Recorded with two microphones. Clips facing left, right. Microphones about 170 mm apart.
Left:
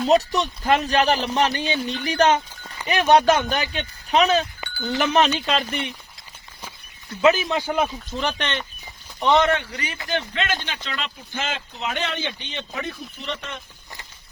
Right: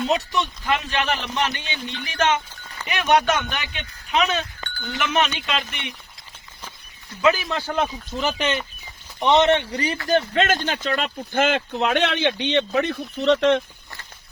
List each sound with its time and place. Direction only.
0.1 s a man's voice: 40° left (ahead or behind)
4.6 s chink: 10° left (ahead or behind)
4.9 s a man's voice: 35° left (ahead or behind)
7.2 s speech: 20° left (ahead or behind)
7.7 s speech: 5° left (ahead or behind)
9.2 s a man's voice: 20° right (ahead or behind); by 13.6 s 90° right